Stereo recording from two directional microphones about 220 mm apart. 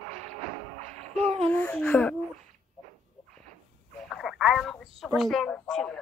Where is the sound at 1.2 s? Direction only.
30° right (ahead or behind).